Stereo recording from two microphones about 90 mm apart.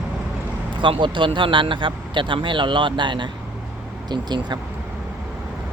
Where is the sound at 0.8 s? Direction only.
65° right (ahead or behind).